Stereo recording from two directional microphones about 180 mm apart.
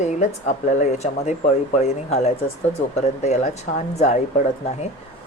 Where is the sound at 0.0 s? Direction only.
40° left (ahead or behind).